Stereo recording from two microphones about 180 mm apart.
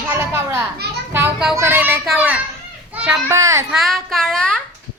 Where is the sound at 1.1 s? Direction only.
10° right (ahead or behind).